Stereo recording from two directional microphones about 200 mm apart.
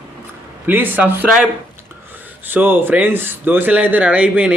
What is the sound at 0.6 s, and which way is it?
Speech, 10° right (ahead or behind).